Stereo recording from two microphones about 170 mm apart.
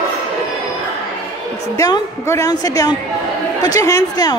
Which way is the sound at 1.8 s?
20° left (ahead or behind).